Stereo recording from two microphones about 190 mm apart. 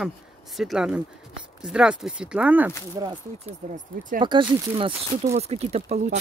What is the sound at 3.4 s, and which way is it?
Speech, 40° right (ahead or behind).